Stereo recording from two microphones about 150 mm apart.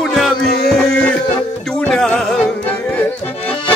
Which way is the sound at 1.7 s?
5° left (ahead or behind).